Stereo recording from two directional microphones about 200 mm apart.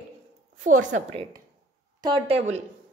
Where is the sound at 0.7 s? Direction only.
40° right (ahead or behind).